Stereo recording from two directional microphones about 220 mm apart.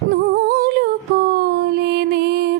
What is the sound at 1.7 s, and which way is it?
Music, 50° right (ahead or behind).